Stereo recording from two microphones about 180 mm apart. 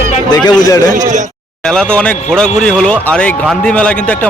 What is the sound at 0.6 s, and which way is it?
Speech, 20° left (ahead or behind).